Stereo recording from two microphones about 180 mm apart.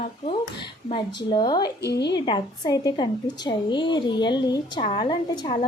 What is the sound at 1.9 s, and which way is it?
Speech, 70° left (ahead or behind).